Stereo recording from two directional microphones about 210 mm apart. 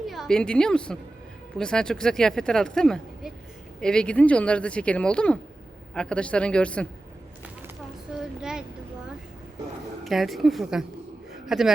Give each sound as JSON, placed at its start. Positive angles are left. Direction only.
{"t": 0.0, "sound": "a woman's voice", "side_deg": 0}
{"t": 8.4, "sound": "a child's voice", "side_deg": -5}
{"t": 10.0, "sound": "a man's voice", "side_deg": 0}